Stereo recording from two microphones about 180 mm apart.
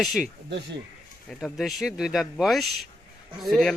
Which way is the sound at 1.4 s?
Centre (ahead or behind).